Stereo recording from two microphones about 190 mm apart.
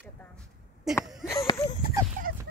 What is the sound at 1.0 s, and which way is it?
Speech, centre (ahead or behind).